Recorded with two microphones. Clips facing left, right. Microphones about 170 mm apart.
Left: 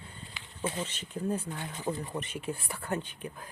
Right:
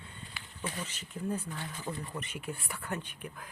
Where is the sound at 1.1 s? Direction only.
30° left (ahead or behind).